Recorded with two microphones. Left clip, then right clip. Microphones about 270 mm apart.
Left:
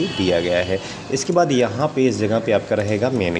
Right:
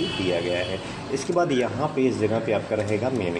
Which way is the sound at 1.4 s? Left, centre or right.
Left.